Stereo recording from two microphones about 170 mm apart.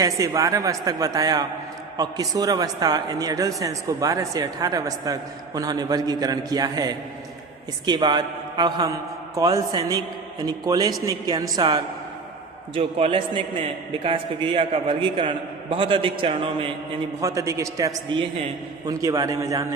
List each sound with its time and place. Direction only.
0.0 s a man's voice: 20° right (ahead or behind)
17.2 s speech: 20° right (ahead or behind)